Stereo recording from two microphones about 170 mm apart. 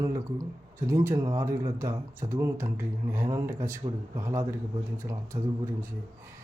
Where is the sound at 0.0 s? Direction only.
20° right (ahead or behind).